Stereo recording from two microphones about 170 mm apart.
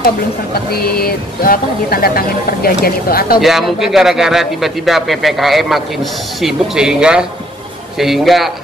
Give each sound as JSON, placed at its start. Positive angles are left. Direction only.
{"t": 0.7, "sound": "speech", "side_deg": 65}
{"t": 3.3, "sound": "a man's voice", "side_deg": 0}